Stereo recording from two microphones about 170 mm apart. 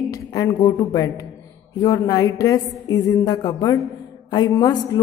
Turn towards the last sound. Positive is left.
turn(degrees=25)  # may be behind; listen again after turning